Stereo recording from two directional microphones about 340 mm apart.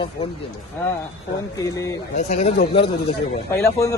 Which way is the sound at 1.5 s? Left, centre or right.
Centre.